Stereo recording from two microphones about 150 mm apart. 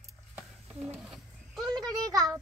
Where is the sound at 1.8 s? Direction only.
25° right (ahead or behind).